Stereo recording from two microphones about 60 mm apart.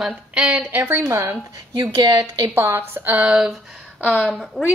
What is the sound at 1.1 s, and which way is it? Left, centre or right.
Speech, right.